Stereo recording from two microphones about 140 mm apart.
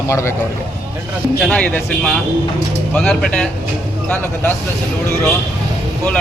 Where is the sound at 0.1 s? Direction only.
20° left (ahead or behind).